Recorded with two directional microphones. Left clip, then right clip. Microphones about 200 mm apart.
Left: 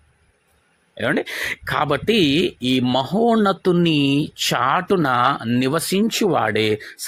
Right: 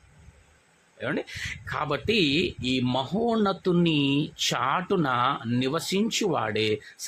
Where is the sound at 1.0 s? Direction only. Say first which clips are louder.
Left 9 dB; 30° left (ahead or behind).